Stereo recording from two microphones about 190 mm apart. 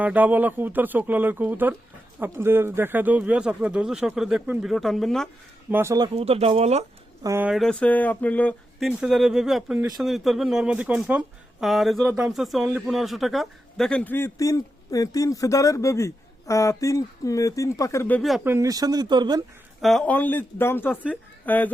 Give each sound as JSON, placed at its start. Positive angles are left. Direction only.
{"t": 0.0, "sound": "speech", "side_deg": -10}
{"t": 5.7, "sound": "speech", "side_deg": -15}
{"t": 6.1, "sound": "speech", "side_deg": -30}
{"t": 7.2, "sound": "speech", "side_deg": -15}
{"t": 7.4, "sound": "a man's voice", "side_deg": 0}
{"t": 18.4, "sound": "speech", "side_deg": -15}
{"t": 19.8, "sound": "a man's voice", "side_deg": 0}